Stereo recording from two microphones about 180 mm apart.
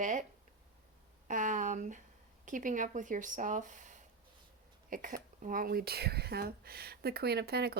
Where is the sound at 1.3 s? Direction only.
45° right (ahead or behind).